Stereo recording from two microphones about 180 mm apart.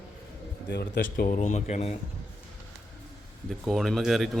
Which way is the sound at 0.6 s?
70° left (ahead or behind).